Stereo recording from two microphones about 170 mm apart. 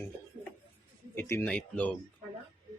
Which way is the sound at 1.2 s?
15° left (ahead or behind).